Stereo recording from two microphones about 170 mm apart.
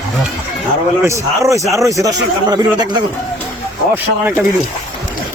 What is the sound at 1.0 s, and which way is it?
A man's voice, 15° right (ahead or behind).